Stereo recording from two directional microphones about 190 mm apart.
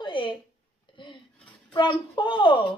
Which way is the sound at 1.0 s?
25° left (ahead or behind).